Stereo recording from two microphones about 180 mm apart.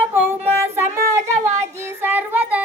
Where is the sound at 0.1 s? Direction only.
10° right (ahead or behind).